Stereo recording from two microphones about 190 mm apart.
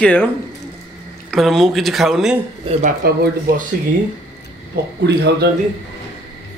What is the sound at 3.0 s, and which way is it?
Speech, 50° right (ahead or behind).